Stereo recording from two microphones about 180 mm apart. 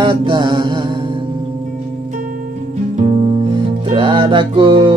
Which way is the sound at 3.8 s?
25° right (ahead or behind).